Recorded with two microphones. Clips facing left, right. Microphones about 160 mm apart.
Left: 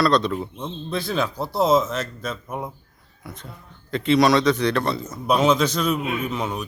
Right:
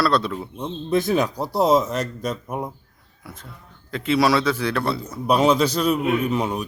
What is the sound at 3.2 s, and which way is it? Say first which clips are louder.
A man's voice: left 2 dB; 5° right (ahead or behind).